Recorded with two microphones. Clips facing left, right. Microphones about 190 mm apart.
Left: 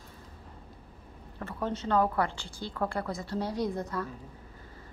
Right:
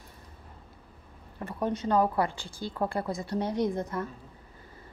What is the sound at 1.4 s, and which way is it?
A woman's voice, 15° right (ahead or behind).